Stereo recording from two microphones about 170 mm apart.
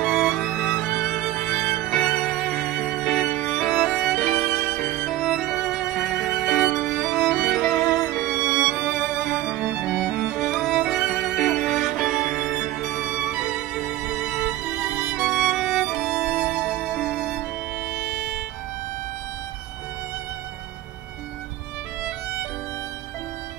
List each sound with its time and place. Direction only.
0.0 s music: centre (ahead or behind)
4.5 s music: 15° left (ahead or behind)
5.0 s music: centre (ahead or behind)
6.2 s violin: centre (ahead or behind)
13.1 s music: 5° right (ahead or behind)